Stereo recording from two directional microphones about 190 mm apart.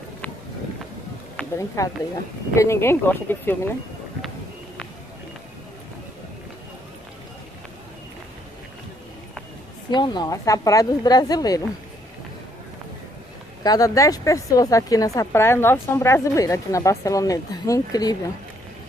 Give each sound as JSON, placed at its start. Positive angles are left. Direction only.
{"t": 1.8, "sound": "speech", "side_deg": 15}
{"t": 9.8, "sound": "speech", "side_deg": 20}
{"t": 13.7, "sound": "speech", "side_deg": 20}